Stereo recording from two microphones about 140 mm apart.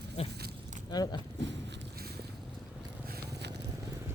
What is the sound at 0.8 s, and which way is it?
Speech, 30° left (ahead or behind).